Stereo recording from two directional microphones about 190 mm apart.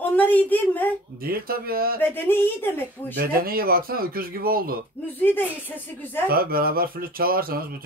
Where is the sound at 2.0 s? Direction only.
10° left (ahead or behind).